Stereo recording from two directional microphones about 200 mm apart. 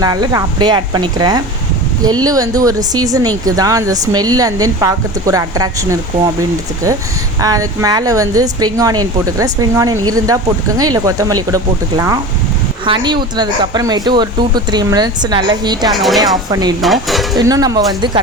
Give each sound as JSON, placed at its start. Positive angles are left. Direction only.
{"t": 0.0, "sound": "a woman's voice", "side_deg": -20}
{"t": 7.4, "sound": "a woman's voice", "side_deg": -15}
{"t": 15.9, "sound": "dishes", "side_deg": 0}
{"t": 16.5, "sound": "speech", "side_deg": -20}
{"t": 16.8, "sound": "dishes", "side_deg": 0}
{"t": 17.3, "sound": "speech", "side_deg": -20}